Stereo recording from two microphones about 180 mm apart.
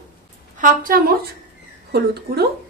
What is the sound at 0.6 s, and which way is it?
Speech, 50° right (ahead or behind).